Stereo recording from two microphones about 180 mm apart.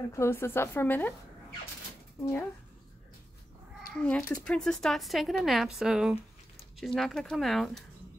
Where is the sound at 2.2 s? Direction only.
10° left (ahead or behind).